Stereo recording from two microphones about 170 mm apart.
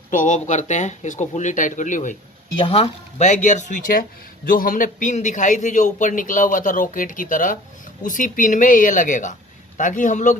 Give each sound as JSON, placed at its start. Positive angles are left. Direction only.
{"t": 0.1, "sound": "a man's voice", "side_deg": 50}
{"t": 2.6, "sound": "a man's voice", "side_deg": 35}